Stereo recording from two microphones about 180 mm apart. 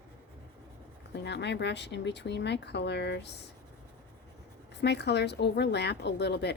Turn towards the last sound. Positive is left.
turn(degrees=70)  # may be behind; listen again after turning